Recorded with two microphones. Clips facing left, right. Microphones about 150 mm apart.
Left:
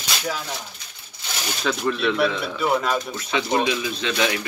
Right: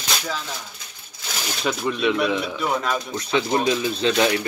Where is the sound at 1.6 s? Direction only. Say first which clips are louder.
Even; 10° right (ahead or behind).